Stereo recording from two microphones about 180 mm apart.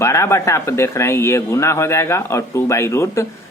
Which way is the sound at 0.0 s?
15° left (ahead or behind).